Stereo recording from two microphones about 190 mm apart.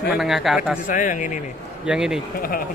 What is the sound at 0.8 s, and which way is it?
Speech, 45° left (ahead or behind).